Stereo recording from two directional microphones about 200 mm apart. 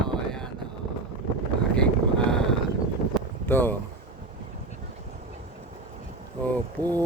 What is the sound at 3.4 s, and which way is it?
Speech, 10° left (ahead or behind).